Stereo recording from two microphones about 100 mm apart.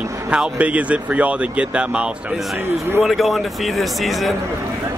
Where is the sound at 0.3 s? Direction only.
10° right (ahead or behind).